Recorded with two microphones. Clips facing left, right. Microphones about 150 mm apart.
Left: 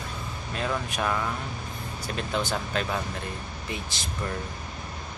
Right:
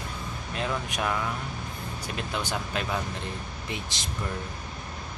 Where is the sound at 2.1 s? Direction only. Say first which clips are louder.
Left 3 dB; 15° right (ahead or behind).